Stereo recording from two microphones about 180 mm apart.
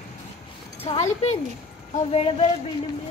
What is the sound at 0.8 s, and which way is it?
A child's voice, 35° left (ahead or behind).